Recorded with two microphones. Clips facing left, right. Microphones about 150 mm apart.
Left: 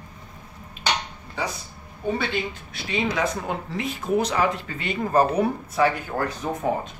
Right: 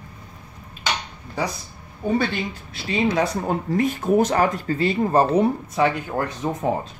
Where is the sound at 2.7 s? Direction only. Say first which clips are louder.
Right 5 dB; 35° right (ahead or behind).